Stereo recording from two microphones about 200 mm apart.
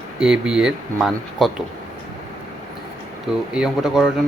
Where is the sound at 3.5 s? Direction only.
5° right (ahead or behind).